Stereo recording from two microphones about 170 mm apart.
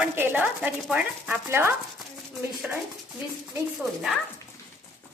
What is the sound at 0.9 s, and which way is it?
Speech, 10° right (ahead or behind).